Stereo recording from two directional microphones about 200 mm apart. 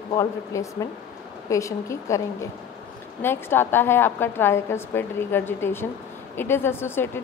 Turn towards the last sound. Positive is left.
turn(degrees=10)  # may be behind; listen again after turning